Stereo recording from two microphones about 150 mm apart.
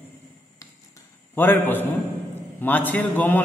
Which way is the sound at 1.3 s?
15° left (ahead or behind).